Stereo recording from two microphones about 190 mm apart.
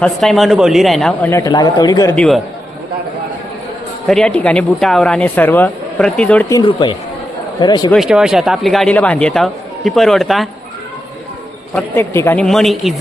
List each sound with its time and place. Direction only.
0.0 s speech: centre (ahead or behind)
1.3 s speech: 20° left (ahead or behind)
2.1 s speech: centre (ahead or behind)
4.0 s speech: 5° left (ahead or behind)
6.5 s speech: 20° left (ahead or behind)
7.9 s speech: centre (ahead or behind)
11.7 s speech: 10° left (ahead or behind)